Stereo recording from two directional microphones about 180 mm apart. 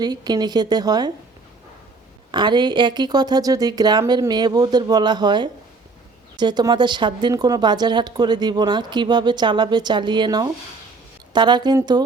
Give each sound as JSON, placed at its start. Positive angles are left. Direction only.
{"t": 0.0, "sound": "speech", "side_deg": -20}
{"t": 2.3, "sound": "speech", "side_deg": -25}